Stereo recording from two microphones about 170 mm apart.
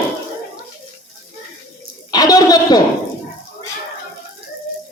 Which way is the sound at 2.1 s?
20° left (ahead or behind).